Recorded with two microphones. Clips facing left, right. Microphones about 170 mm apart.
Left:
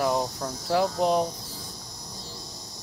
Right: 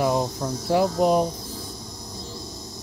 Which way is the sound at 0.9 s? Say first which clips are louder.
Right 5 dB; 5° right (ahead or behind).